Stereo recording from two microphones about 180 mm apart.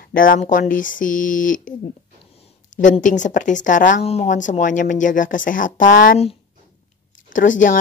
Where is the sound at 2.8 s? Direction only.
45° left (ahead or behind).